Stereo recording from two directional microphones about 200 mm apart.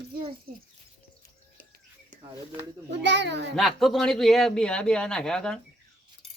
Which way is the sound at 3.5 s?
Centre (ahead or behind).